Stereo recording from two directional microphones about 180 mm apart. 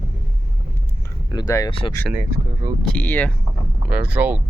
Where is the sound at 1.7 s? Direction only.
30° left (ahead or behind).